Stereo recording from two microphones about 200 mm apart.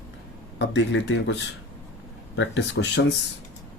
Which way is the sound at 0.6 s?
65° left (ahead or behind).